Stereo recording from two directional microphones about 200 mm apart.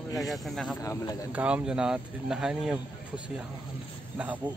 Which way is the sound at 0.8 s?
15° left (ahead or behind).